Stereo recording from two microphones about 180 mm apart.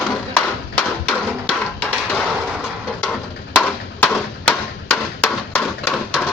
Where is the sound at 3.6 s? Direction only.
5° left (ahead or behind).